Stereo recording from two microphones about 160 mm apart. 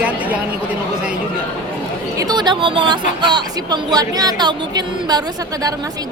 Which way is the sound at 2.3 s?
25° right (ahead or behind).